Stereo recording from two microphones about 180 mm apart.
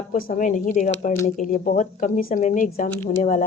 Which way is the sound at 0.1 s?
50° left (ahead or behind).